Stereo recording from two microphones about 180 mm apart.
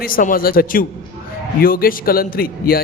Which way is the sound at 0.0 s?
50° left (ahead or behind).